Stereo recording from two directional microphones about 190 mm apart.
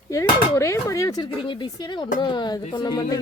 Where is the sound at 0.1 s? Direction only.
15° left (ahead or behind).